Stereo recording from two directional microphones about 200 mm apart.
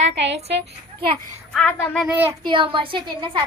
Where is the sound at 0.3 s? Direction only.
30° right (ahead or behind).